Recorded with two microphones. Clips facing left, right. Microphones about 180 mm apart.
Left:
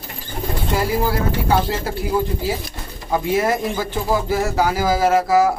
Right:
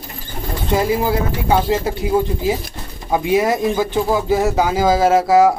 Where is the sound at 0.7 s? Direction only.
20° right (ahead or behind).